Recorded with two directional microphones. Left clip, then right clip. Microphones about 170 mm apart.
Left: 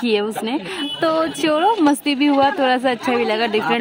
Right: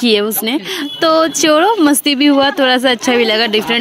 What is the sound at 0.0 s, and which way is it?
A woman's voice, 20° right (ahead or behind).